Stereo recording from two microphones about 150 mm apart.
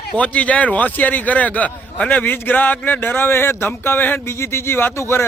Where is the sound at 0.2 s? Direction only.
10° left (ahead or behind).